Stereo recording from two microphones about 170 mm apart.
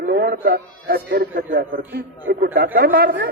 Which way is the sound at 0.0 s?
65° right (ahead or behind).